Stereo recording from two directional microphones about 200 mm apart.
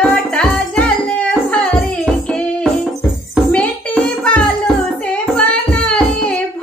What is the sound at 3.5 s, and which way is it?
Music, 5° left (ahead or behind).